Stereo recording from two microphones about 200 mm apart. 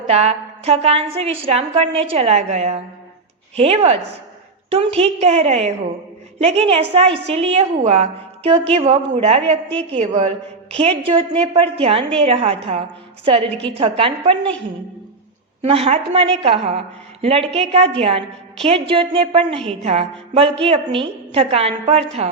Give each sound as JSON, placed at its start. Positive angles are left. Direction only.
{"t": 0.1, "sound": "a woman's voice", "side_deg": -30}
{"t": 15.6, "sound": "a woman's voice", "side_deg": -30}